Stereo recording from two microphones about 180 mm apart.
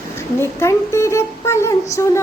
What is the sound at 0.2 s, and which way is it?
Speech, 15° left (ahead or behind).